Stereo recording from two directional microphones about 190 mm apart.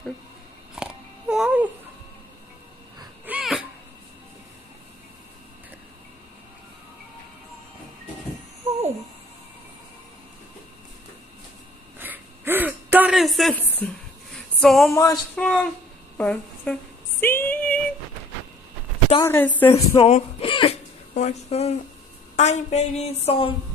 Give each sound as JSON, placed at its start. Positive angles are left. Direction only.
{"t": 0.7, "sound": "babbling", "side_deg": -5}
{"t": 3.3, "sound": "a sound", "side_deg": -5}
{"t": 12.0, "sound": "a sound", "side_deg": -10}
{"t": 14.9, "sound": "speech", "side_deg": 20}
{"t": 15.3, "sound": "a woman's voice", "side_deg": 5}
{"t": 17.2, "sound": "female singing", "side_deg": 10}
{"t": 19.2, "sound": "speech", "side_deg": 10}
{"t": 20.0, "sound": "a sound", "side_deg": 35}
{"t": 22.3, "sound": "a woman's voice", "side_deg": 35}